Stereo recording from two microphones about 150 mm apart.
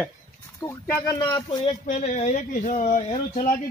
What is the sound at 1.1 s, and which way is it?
Speech, 30° left (ahead or behind).